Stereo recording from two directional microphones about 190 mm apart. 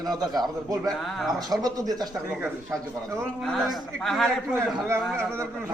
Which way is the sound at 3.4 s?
Centre (ahead or behind).